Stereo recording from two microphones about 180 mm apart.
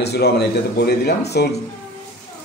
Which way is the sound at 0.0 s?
65° left (ahead or behind).